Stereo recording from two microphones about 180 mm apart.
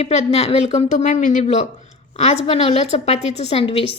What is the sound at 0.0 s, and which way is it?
A woman's voice, 35° left (ahead or behind).